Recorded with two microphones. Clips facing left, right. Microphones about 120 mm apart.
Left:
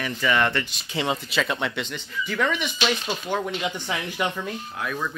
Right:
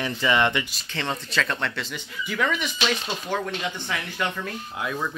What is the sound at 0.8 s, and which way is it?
Speech, 15° left (ahead or behind).